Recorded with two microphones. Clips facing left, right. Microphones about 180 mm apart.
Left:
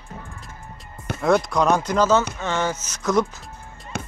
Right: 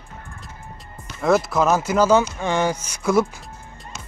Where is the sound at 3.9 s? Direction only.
60° left (ahead or behind).